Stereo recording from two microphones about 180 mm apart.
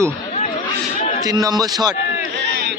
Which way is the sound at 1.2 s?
20° right (ahead or behind).